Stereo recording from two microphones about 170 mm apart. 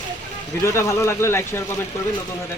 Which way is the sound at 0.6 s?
15° left (ahead or behind).